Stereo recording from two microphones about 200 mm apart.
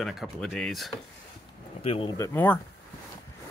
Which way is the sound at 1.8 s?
25° left (ahead or behind).